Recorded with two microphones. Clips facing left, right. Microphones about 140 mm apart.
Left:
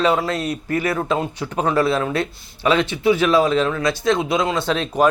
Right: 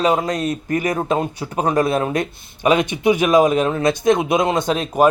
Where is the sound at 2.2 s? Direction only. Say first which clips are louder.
Right 1 dB; 15° right (ahead or behind).